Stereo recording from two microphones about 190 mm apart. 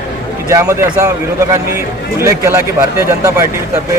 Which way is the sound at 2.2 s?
15° right (ahead or behind).